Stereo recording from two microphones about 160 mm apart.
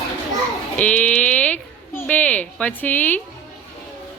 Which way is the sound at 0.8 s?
10° left (ahead or behind).